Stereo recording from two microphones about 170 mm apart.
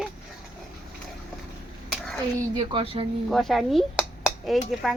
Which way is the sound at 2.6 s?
30° right (ahead or behind).